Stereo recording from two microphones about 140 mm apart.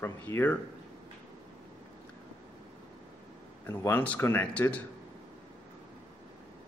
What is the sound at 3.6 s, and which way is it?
Speech, 15° left (ahead or behind).